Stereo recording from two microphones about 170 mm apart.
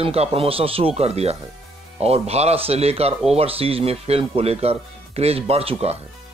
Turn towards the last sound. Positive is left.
turn(degrees=-35)  # may be behind; listen again after turning